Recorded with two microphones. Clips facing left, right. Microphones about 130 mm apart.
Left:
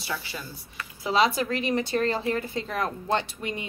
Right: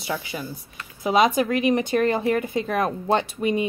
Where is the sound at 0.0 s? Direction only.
20° right (ahead or behind).